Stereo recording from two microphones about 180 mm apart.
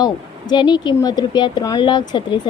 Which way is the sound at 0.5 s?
25° left (ahead or behind).